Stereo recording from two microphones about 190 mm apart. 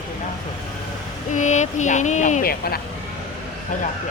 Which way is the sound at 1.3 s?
40° left (ahead or behind).